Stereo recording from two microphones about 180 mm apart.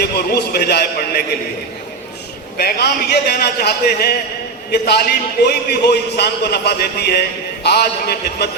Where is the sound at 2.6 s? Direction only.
60° left (ahead or behind).